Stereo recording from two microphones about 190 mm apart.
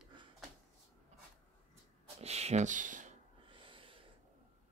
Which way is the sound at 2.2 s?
35° right (ahead or behind).